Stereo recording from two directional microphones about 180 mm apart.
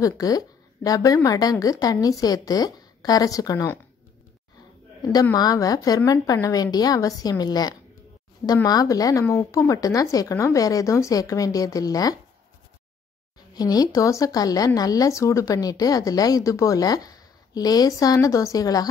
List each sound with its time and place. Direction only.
0.0 s speech: 20° left (ahead or behind)
5.0 s speech: 20° left (ahead or behind)
13.6 s speech: 20° left (ahead or behind)